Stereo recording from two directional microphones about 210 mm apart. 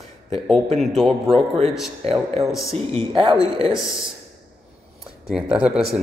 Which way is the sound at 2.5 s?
Centre (ahead or behind).